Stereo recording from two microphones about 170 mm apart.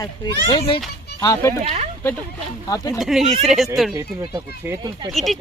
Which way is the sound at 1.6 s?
40° right (ahead or behind).